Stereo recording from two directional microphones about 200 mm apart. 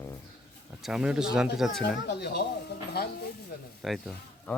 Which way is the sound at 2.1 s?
55° left (ahead or behind).